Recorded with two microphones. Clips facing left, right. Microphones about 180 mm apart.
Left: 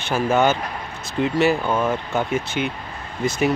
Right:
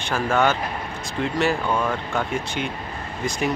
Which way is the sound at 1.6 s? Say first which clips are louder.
Left 2 dB; 20° left (ahead or behind).